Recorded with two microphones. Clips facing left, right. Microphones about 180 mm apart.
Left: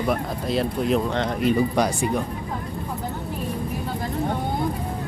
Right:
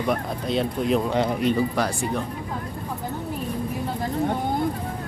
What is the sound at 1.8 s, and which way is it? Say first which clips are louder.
Speech: left 3 dB; 15° left (ahead or behind).